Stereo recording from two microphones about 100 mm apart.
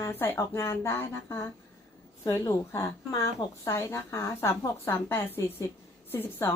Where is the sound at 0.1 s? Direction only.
20° left (ahead or behind).